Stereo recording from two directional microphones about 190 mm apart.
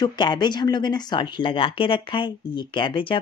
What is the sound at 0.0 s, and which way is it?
Speech, 25° left (ahead or behind).